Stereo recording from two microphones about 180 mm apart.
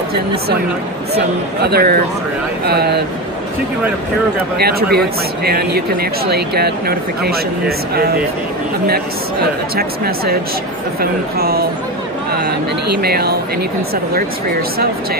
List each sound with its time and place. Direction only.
1.1 s speech: 60° right (ahead or behind)
4.6 s speech: 60° right (ahead or behind)
9.8 s speech: 60° right (ahead or behind)